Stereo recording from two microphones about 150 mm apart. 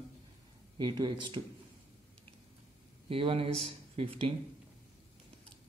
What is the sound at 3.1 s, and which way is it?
Speech, 40° right (ahead or behind).